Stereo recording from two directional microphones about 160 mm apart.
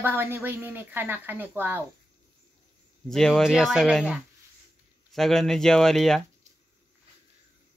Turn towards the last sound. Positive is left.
turn(degrees=0)  # may be behind; listen again after turning